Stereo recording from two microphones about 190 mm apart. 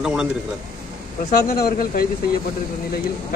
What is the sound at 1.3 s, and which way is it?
Speech, 55° left (ahead or behind).